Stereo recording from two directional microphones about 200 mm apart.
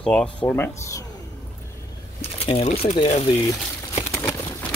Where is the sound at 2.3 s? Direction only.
30° left (ahead or behind).